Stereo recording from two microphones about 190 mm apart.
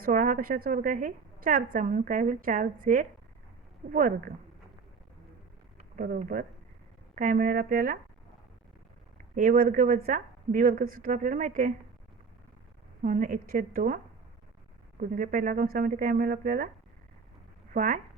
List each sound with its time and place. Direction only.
0.0 s a woman's voice: 45° right (ahead or behind)
6.0 s a woman's voice: 45° right (ahead or behind)
9.3 s a woman's voice: 45° right (ahead or behind)
13.0 s a woman's voice: 45° right (ahead or behind)
15.0 s a woman's voice: 45° right (ahead or behind)
17.7 s a woman's voice: 45° right (ahead or behind)